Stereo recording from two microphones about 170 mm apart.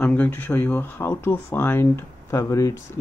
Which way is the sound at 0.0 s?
10° left (ahead or behind).